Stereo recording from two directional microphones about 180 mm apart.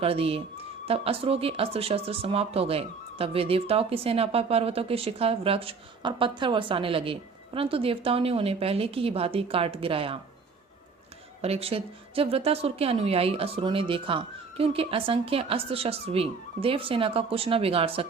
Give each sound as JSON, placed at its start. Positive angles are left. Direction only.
{"t": 0.0, "sound": "speech", "side_deg": -35}
{"t": 11.4, "sound": "speech", "side_deg": -35}